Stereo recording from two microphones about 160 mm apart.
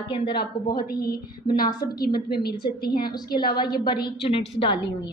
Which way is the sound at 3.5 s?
25° left (ahead or behind).